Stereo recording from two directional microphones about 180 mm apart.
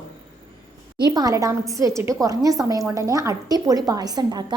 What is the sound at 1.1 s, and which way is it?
A woman's voice, 20° right (ahead or behind).